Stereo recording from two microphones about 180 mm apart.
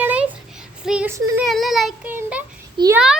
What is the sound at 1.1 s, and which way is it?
Speech, 15° right (ahead or behind).